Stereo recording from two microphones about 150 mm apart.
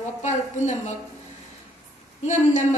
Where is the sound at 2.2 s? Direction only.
50° left (ahead or behind).